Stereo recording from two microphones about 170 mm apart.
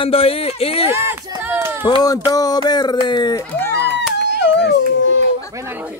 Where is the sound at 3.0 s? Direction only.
25° left (ahead or behind).